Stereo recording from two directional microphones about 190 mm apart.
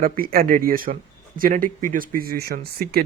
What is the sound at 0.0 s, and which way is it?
Speech, 50° right (ahead or behind).